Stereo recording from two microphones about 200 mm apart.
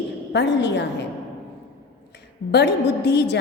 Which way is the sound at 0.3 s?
60° left (ahead or behind).